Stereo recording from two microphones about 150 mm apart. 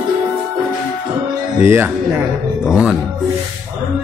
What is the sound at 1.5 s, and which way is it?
Music, 15° right (ahead or behind).